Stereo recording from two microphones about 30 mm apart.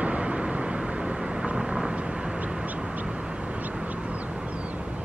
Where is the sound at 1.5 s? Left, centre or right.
Centre.